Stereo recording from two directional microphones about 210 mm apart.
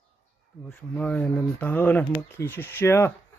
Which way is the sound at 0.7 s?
5° left (ahead or behind).